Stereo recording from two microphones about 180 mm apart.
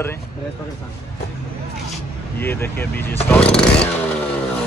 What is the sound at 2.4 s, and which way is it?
Speech, 10° left (ahead or behind).